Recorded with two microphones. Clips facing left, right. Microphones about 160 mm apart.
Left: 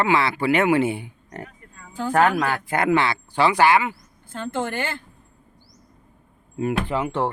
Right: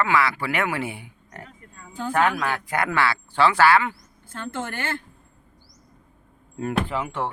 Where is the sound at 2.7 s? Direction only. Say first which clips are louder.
Left 4 dB; 20° left (ahead or behind).